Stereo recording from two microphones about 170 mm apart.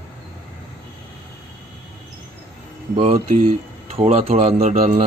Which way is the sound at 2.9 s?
35° right (ahead or behind).